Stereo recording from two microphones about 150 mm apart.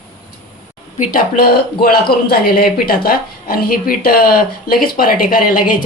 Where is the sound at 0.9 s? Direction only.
70° left (ahead or behind).